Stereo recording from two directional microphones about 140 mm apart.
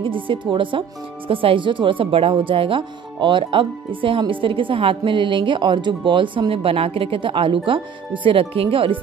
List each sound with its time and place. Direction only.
0.0 s speech: 35° right (ahead or behind)